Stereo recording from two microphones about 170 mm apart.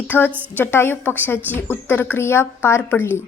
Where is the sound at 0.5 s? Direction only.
10° left (ahead or behind).